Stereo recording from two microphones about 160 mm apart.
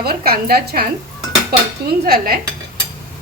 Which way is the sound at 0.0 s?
75° right (ahead or behind).